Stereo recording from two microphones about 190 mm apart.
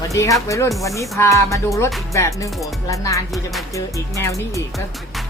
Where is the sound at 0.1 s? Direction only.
15° left (ahead or behind).